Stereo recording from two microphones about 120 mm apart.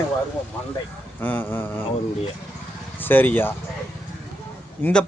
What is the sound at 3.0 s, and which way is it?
Speech, 15° left (ahead or behind).